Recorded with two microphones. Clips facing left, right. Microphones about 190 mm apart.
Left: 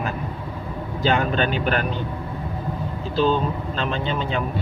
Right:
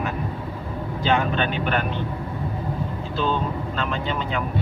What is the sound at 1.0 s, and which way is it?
Speech, 35° left (ahead or behind).